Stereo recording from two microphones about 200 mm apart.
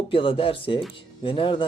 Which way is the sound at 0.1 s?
25° left (ahead or behind).